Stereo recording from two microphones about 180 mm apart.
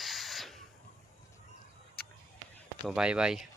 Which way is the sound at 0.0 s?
Centre (ahead or behind).